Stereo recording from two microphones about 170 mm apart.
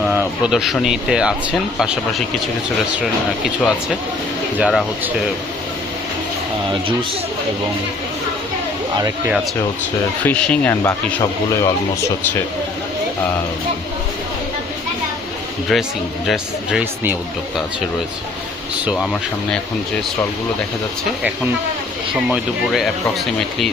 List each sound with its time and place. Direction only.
0.1 s speech: 10° right (ahead or behind)
10.2 s speech: 10° left (ahead or behind)
15.7 s speech: centre (ahead or behind)
22.3 s speech: centre (ahead or behind)